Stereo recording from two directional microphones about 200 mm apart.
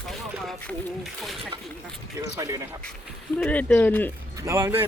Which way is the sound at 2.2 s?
15° right (ahead or behind).